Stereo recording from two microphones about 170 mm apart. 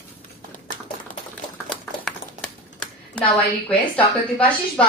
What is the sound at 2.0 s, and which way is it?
Typewriter, 5° left (ahead or behind).